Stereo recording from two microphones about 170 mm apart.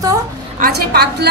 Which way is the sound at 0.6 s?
70° right (ahead or behind).